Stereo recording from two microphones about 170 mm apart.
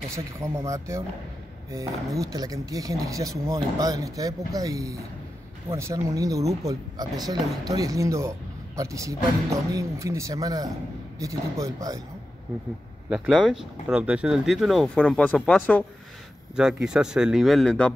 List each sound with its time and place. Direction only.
0.1 s speech: 15° right (ahead or behind)
2.1 s speech: 20° right (ahead or behind)
13.1 s speech: 5° right (ahead or behind)
16.5 s speech: 5° right (ahead or behind)